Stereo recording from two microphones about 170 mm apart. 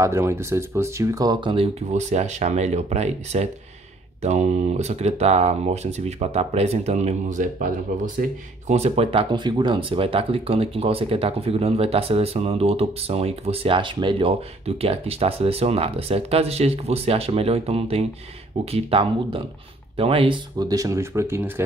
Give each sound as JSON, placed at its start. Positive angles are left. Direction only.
{"t": 0.0, "sound": "speech", "side_deg": -15}